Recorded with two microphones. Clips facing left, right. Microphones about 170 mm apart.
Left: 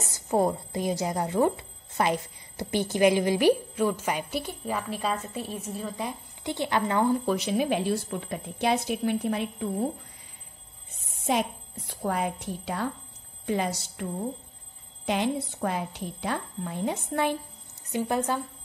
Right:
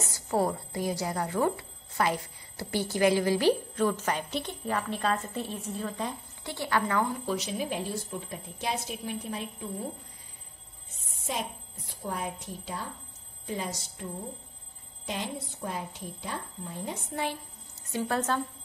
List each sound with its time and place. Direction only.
0.0 s speech: 20° left (ahead or behind)
7.2 s a woman's voice: 60° left (ahead or behind)
11.9 s a woman's voice: 75° left (ahead or behind)
15.0 s a woman's voice: 75° left (ahead or behind)
17.8 s a woman's voice: 15° left (ahead or behind)